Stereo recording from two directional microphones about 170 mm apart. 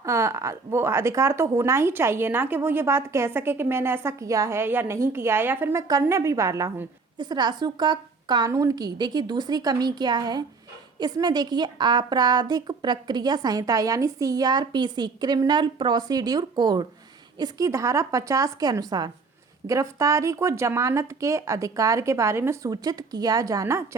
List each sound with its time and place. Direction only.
0.0 s a woman's voice: 15° right (ahead or behind)